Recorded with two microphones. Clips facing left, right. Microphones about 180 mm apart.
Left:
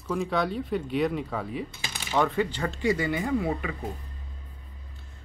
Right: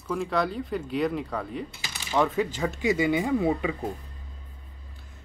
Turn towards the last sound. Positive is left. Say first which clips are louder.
# right 3 dB
turn(degrees=-20)  # may be behind; listen again after turning